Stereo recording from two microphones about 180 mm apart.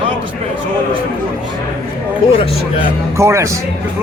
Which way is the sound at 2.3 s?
30° left (ahead or behind).